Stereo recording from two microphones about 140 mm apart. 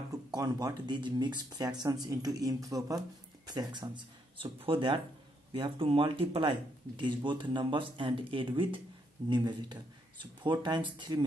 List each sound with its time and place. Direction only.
0.3 s speech: 25° right (ahead or behind)